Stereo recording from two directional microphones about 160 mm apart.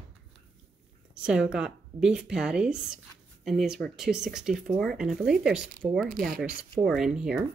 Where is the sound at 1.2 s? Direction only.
5° right (ahead or behind).